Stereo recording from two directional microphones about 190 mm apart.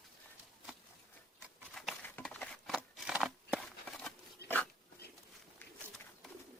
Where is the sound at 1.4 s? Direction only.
Centre (ahead or behind).